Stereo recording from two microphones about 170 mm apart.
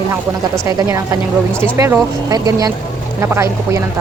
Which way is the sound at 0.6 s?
20° right (ahead or behind).